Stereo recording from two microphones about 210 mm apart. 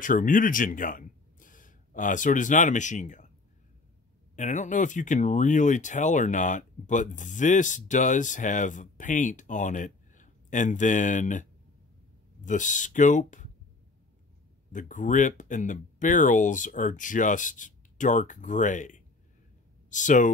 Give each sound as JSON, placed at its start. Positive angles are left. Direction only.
{"t": 0.0, "sound": "speech", "side_deg": 40}
{"t": 4.4, "sound": "speech", "side_deg": 35}
{"t": 12.4, "sound": "speech", "side_deg": 35}
{"t": 14.7, "sound": "speech", "side_deg": 35}